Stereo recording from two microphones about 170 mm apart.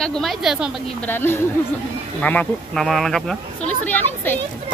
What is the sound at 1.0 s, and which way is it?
Speech, 15° left (ahead or behind).